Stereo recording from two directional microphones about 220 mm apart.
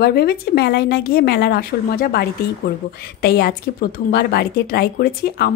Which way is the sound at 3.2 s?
45° left (ahead or behind).